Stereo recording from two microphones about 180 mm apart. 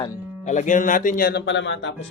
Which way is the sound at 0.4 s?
45° left (ahead or behind).